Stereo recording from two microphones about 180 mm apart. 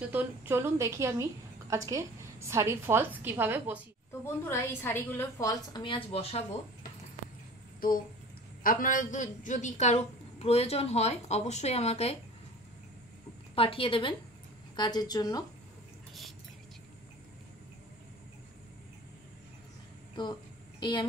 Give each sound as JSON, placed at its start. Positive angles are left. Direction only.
{"t": 0.0, "sound": "a woman's voice", "side_deg": -10}
{"t": 4.2, "sound": "a woman's voice", "side_deg": 15}
{"t": 8.6, "sound": "a woman's voice", "side_deg": 50}
{"t": 13.6, "sound": "a woman's voice", "side_deg": 30}
{"t": 20.8, "sound": "a woman's voice", "side_deg": 25}